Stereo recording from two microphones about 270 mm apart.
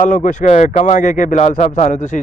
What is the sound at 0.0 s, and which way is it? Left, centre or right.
Speech, left.